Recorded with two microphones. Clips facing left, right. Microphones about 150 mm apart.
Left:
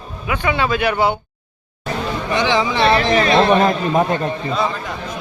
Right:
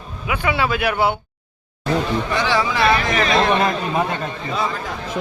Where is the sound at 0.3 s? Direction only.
5° right (ahead or behind).